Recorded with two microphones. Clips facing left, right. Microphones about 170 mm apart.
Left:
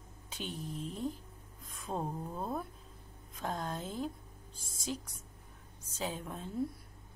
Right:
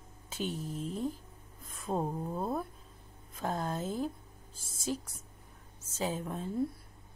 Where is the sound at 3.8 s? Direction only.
45° right (ahead or behind).